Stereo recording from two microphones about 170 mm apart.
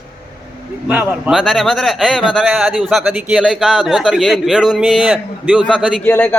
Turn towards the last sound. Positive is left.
turn(degrees=5)  # may be behind; listen again after turning